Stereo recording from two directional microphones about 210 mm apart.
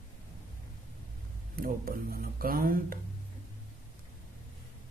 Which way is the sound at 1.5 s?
45° right (ahead or behind).